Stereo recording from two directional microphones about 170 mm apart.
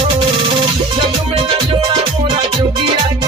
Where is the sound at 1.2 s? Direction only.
35° right (ahead or behind).